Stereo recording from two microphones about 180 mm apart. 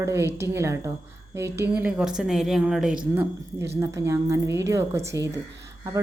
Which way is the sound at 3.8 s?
15° right (ahead or behind).